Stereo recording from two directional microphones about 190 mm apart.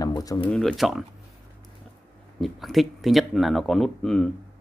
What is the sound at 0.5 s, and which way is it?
Speech, 5° left (ahead or behind).